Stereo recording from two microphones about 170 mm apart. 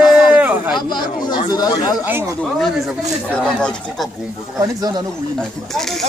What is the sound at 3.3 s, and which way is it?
Speech, 5° left (ahead or behind).